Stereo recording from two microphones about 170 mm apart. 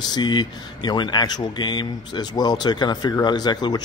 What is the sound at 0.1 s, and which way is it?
Speech, 25° left (ahead or behind).